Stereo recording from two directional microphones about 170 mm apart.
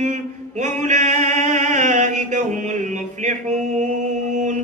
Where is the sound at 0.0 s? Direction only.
45° right (ahead or behind).